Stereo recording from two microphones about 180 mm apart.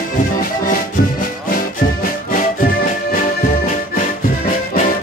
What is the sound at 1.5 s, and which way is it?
Music, 50° left (ahead or behind).